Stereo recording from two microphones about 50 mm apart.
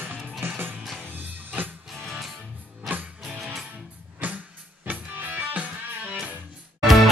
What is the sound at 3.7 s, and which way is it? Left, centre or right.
Music, right.